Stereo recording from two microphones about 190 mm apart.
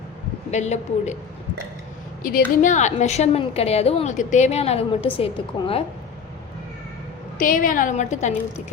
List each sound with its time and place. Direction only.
0.5 s a woman's voice: 35° left (ahead or behind)
2.6 s a woman's voice: 40° left (ahead or behind)
7.3 s a woman's voice: 45° left (ahead or behind)